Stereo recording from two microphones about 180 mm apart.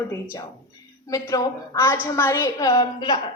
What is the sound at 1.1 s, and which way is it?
A woman's voice, 20° left (ahead or behind).